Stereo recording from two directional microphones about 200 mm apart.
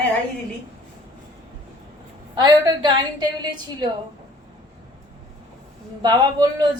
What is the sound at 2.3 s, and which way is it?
Speech, 20° right (ahead or behind).